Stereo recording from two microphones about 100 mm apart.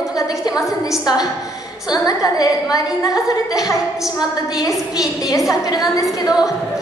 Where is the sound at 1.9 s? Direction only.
35° left (ahead or behind).